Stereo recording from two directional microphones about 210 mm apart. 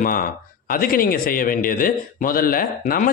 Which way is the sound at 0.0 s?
40° left (ahead or behind).